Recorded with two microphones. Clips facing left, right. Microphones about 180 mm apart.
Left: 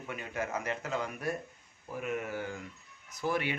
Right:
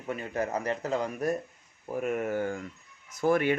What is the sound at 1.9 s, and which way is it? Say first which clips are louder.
Speech: right 6 dB; 45° right (ahead or behind).